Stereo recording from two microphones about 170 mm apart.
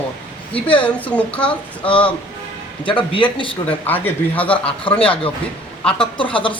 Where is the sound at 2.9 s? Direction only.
30° left (ahead or behind).